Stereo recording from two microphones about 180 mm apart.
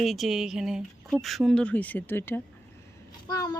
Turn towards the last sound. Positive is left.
turn(degrees=20)  # may be behind; listen again after turning